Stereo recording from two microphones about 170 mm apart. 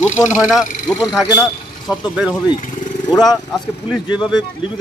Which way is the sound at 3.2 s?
Centre (ahead or behind).